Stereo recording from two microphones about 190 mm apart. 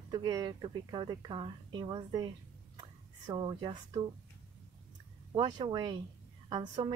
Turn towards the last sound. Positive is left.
turn(degrees=-25)  # may be behind; listen again after turning